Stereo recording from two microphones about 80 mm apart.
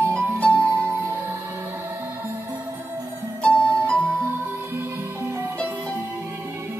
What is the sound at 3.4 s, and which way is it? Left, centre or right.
Music, centre.